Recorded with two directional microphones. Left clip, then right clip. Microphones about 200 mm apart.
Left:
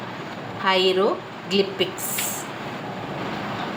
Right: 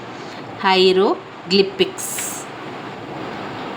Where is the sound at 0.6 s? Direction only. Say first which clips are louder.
Right 5 dB; 45° right (ahead or behind).